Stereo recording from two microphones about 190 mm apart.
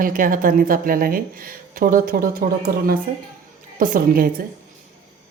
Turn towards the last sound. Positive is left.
turn(degrees=-50)  # may be behind; listen again after turning